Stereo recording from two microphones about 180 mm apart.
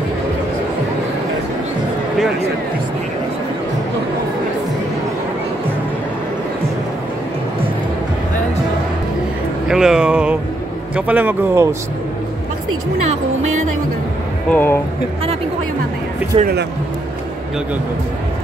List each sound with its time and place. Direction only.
9.7 s a sound: 5° right (ahead or behind)
11.0 s a man's voice: 10° right (ahead or behind)
14.5 s speech: 10° left (ahead or behind)
16.3 s speech: 25° right (ahead or behind)